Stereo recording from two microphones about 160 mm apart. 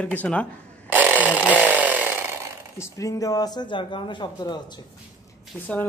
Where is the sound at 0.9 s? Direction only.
10° right (ahead or behind).